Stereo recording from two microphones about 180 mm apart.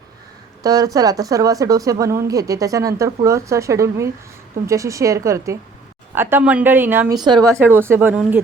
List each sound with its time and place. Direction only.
0.6 s a woman's voice: 20° right (ahead or behind)
7.3 s speech: 5° left (ahead or behind)
7.6 s a woman's voice: 10° right (ahead or behind)